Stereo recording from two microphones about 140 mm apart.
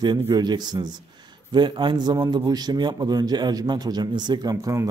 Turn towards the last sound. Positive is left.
turn(degrees=-20)  # may be behind; listen again after turning